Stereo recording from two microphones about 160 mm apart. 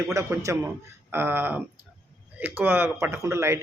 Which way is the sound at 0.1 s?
20° right (ahead or behind).